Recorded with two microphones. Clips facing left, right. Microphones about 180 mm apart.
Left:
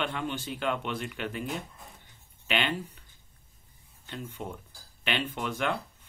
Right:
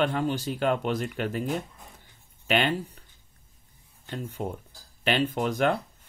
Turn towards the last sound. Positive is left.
turn(degrees=-40)  # may be behind; listen again after turning